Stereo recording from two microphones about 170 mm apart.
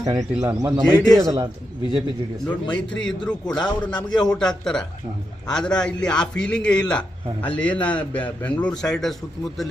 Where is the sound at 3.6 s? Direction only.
25° left (ahead or behind).